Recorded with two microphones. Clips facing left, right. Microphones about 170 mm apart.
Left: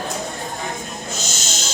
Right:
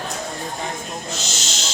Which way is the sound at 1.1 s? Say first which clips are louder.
Left 1 dB; 45° left (ahead or behind).